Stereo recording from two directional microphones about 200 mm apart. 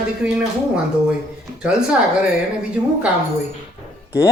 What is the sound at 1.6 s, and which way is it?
Speech, 5° right (ahead or behind).